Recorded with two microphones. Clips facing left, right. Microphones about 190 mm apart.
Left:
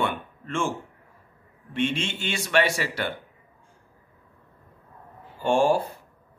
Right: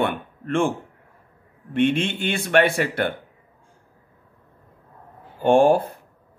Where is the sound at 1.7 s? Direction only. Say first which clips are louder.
Right 6 dB; 55° right (ahead or behind).